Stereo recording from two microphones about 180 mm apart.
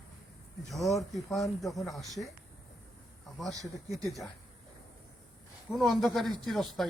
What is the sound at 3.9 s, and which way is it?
Speech, 20° right (ahead or behind).